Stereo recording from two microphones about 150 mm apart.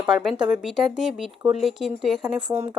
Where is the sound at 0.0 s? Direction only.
Centre (ahead or behind).